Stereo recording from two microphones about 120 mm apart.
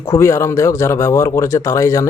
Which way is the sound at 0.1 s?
25° left (ahead or behind).